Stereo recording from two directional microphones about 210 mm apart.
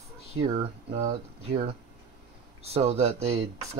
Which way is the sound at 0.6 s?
30° right (ahead or behind).